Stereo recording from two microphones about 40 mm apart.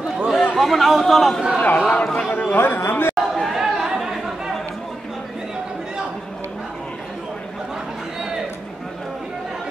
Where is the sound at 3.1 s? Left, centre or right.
Centre.